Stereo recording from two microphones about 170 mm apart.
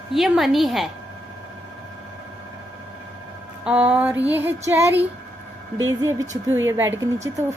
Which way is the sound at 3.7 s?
5° right (ahead or behind).